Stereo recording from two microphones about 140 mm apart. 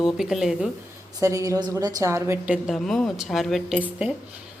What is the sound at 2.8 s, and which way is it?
A woman's voice, centre (ahead or behind).